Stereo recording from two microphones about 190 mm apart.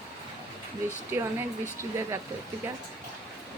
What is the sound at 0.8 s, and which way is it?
Speech, 10° right (ahead or behind).